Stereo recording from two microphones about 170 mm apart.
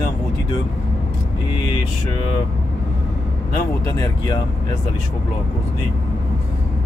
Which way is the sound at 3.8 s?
20° left (ahead or behind).